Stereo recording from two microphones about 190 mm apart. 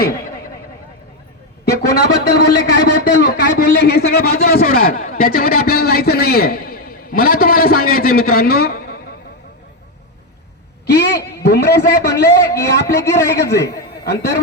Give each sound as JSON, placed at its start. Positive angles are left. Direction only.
{"t": 1.9, "sound": "a man's voice", "side_deg": 65}
{"t": 10.9, "sound": "a woman's voice", "side_deg": 60}